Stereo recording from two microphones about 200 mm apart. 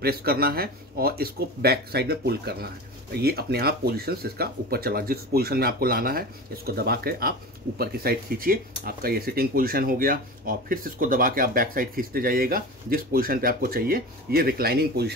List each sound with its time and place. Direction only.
0.0 s speech: 50° right (ahead or behind)